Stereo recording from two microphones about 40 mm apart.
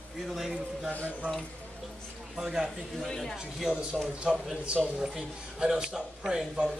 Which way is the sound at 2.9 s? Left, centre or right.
Centre.